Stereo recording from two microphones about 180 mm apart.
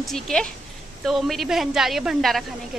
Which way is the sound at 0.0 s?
5° left (ahead or behind).